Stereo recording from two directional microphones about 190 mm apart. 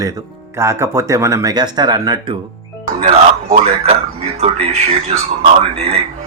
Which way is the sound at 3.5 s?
35° right (ahead or behind).